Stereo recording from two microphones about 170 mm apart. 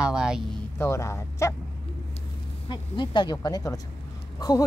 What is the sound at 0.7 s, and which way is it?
Speech, 15° left (ahead or behind).